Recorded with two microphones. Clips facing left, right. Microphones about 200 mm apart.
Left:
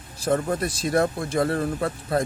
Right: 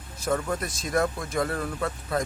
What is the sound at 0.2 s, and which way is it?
Speech, 30° left (ahead or behind).